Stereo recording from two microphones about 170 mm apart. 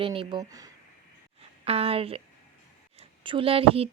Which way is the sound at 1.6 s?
35° right (ahead or behind).